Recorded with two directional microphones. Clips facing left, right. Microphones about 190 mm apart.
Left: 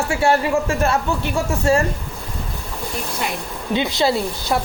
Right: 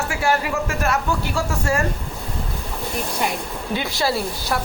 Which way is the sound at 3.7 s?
20° left (ahead or behind).